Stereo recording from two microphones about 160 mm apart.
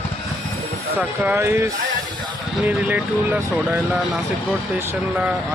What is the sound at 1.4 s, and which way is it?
Speech, 15° right (ahead or behind).